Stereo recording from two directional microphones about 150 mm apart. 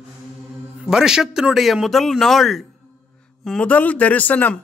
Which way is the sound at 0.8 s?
5° right (ahead or behind).